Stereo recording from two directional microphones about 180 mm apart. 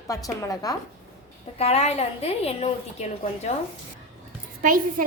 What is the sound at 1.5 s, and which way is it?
A woman's voice, 35° left (ahead or behind).